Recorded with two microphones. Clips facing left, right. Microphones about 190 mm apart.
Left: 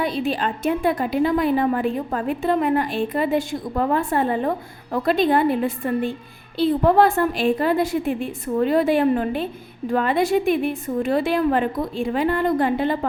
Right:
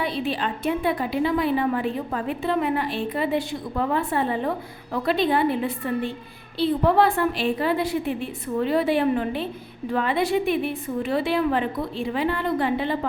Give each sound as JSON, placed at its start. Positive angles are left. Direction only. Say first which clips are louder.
{"t": 0.0, "sound": "a woman's voice", "louder": "left 3 dB", "side_deg": 45}